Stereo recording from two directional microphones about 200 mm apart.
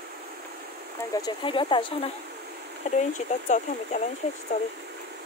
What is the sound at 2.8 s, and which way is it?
Speech, 40° left (ahead or behind).